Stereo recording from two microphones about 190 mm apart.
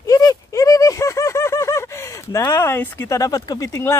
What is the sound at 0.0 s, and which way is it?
Speech, 20° left (ahead or behind).